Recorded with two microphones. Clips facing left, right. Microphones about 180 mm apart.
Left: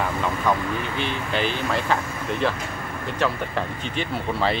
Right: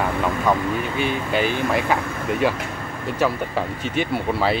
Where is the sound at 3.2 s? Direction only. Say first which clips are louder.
Right 3 dB; 10° right (ahead or behind).